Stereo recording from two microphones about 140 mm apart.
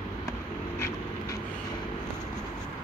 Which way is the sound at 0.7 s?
20° left (ahead or behind).